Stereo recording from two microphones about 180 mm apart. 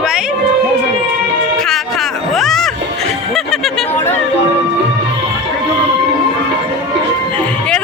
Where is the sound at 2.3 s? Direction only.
Centre (ahead or behind).